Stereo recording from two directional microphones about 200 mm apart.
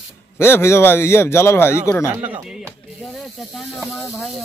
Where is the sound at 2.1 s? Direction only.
10° right (ahead or behind).